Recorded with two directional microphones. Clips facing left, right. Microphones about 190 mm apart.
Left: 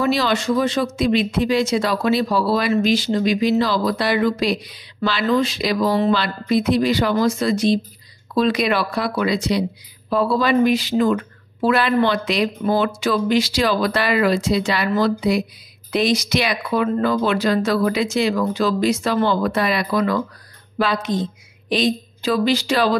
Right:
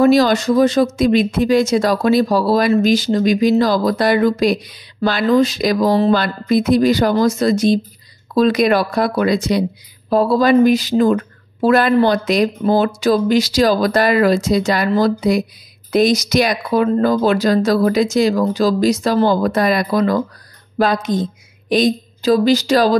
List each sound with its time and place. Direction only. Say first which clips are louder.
0.0 s a woman's voice: right 7 dB; 45° right (ahead or behind)